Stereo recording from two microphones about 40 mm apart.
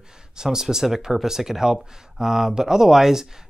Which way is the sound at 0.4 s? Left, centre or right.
Centre.